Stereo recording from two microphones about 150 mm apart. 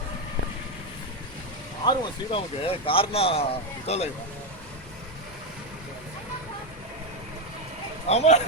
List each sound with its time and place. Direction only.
1.8 s speech: 30° left (ahead or behind)
8.1 s speech: 45° left (ahead or behind)